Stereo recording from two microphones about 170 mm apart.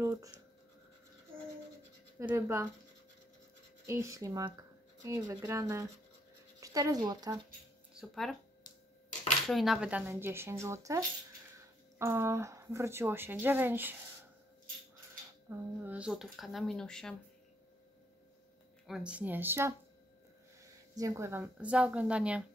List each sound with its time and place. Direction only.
0.0 s speech: 20° right (ahead or behind)
2.2 s speech: 15° right (ahead or behind)
3.8 s speech: 15° right (ahead or behind)
8.0 s speech: centre (ahead or behind)
9.5 s speech: centre (ahead or behind)
15.5 s speech: 15° right (ahead or behind); by 17.2 s 5° left (ahead or behind)
18.9 s speech: 5° right (ahead or behind)
20.9 s speech: 20° right (ahead or behind)